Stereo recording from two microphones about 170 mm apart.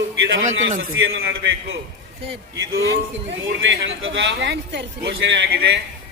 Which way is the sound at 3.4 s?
90° right.